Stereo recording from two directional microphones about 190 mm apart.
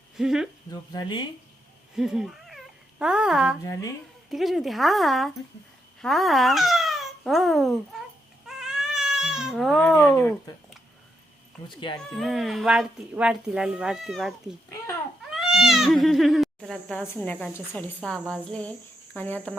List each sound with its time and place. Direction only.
0.2 s speech: centre (ahead or behind)
0.7 s speech: 20° left (ahead or behind)
2.0 s speech: centre (ahead or behind)
3.6 s cricket: 15° left (ahead or behind)
4.3 s speech: centre (ahead or behind)
8.4 s cat: 5° right (ahead or behind)
10.2 s cricket: 10° left (ahead or behind)
12.1 s speech: centre (ahead or behind)
19.1 s cricket: 10° left (ahead or behind)